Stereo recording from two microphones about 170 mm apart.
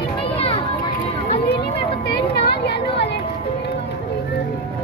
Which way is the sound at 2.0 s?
80° left.